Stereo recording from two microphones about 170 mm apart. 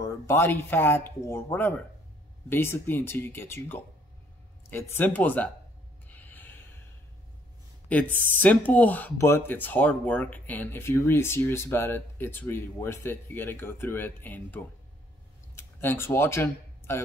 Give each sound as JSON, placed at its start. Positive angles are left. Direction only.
{"t": 0.0, "sound": "speech", "side_deg": 15}
{"t": 6.0, "sound": "a sound", "side_deg": 10}
{"t": 7.9, "sound": "speech", "side_deg": 10}